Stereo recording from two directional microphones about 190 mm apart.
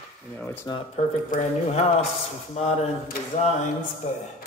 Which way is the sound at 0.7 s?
35° left (ahead or behind).